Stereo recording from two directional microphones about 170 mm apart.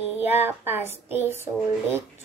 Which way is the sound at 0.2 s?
10° right (ahead or behind).